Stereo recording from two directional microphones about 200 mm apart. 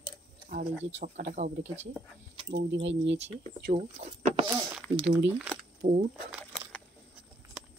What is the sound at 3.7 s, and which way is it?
Speech, 30° right (ahead or behind).